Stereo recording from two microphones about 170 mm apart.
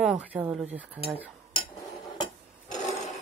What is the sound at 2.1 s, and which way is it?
Filing, 25° left (ahead or behind).